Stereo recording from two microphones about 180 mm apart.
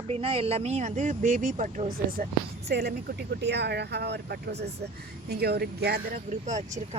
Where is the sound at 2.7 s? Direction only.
65° right (ahead or behind).